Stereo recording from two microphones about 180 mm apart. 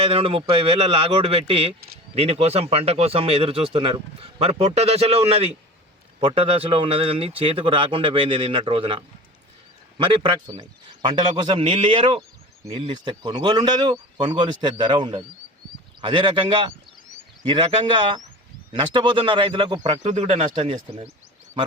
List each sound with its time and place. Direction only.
0.0 s a man's voice: 35° right (ahead or behind)
19.8 s speech: 40° right (ahead or behind)
20.5 s a man's voice: 30° right (ahead or behind)